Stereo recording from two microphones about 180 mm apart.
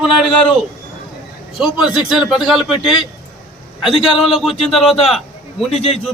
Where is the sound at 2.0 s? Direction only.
5° right (ahead or behind).